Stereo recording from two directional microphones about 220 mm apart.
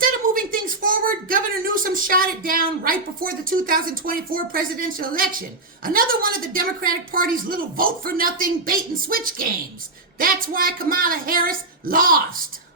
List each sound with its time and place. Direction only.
0.0 s speech: 40° right (ahead or behind)